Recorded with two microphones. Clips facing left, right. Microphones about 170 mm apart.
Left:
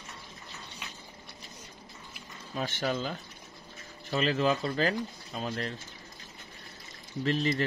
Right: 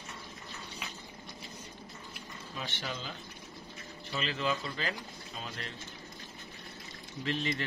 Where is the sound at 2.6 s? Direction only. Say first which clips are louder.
Left 9 dB; 45° left (ahead or behind).